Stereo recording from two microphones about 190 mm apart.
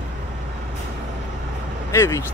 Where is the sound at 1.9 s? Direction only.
15° left (ahead or behind).